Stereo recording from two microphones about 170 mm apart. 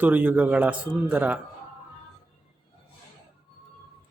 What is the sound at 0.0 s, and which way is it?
Speech, 10° right (ahead or behind).